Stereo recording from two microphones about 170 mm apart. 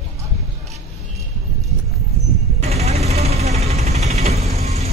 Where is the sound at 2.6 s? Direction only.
40° right (ahead or behind).